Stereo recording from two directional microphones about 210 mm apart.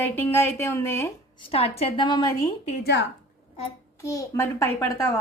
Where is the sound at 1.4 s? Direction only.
30° left (ahead or behind).